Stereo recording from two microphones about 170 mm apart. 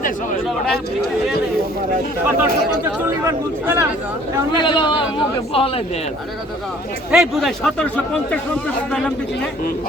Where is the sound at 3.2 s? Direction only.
15° right (ahead or behind).